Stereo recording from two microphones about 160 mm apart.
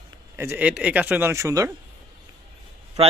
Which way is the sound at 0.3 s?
15° right (ahead or behind).